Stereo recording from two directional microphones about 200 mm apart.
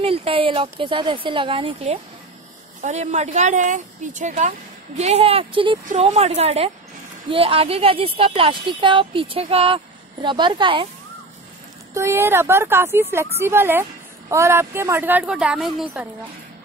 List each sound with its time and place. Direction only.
0.0 s a woman's voice: 30° right (ahead or behind)
11.9 s speech: 15° right (ahead or behind)